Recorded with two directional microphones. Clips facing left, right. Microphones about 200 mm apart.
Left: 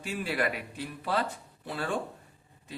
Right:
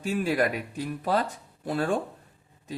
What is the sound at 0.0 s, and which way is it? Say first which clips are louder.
A man's voice: right 6 dB; 45° right (ahead or behind).